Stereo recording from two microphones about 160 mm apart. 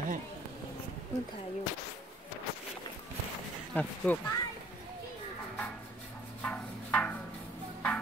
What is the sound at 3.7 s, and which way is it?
Speech, 10° left (ahead or behind).